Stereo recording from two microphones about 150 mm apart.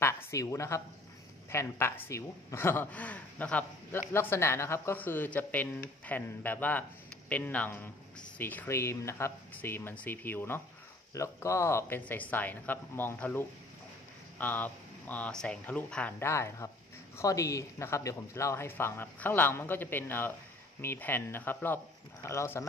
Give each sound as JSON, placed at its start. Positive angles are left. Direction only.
{"t": 0.0, "sound": "speech", "side_deg": 20}